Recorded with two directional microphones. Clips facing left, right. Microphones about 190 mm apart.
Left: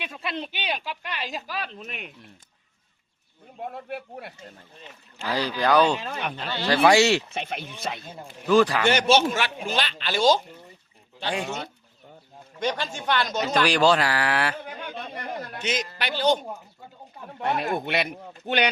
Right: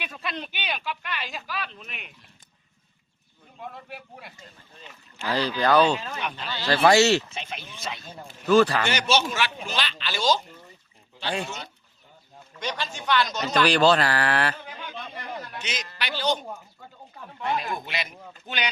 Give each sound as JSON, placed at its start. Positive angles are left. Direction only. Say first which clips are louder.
{"t": 0.0, "sound": "speech", "louder": "left 2 dB", "side_deg": 25}
{"t": 3.6, "sound": "speech", "louder": "left 6 dB", "side_deg": 55}
{"t": 5.2, "sound": "speech", "louder": "right 1 dB", "side_deg": 10}
{"t": 6.0, "sound": "speech", "louder": "left 2 dB", "side_deg": 30}
{"t": 6.7, "sound": "speech", "louder": "even", "side_deg": 10}
{"t": 7.3, "sound": "speech", "louder": "left 5 dB", "side_deg": 55}
{"t": 8.0, "sound": "speech", "louder": "right 1 dB", "side_deg": 10}
{"t": 8.9, "sound": "a man's voice", "louder": "left 5 dB", "side_deg": 55}
{"t": 11.4, "sound": "a man's voice", "louder": "left 5 dB", "side_deg": 50}
{"t": 13.5, "sound": "speech", "louder": "right 1 dB", "side_deg": 10}
{"t": 14.6, "sound": "a man's voice", "louder": "left 3 dB", "side_deg": 50}